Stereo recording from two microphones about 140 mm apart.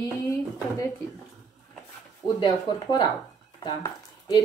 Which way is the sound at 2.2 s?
30° left (ahead or behind).